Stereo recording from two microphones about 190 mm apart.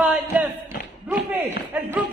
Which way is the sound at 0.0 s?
10° right (ahead or behind).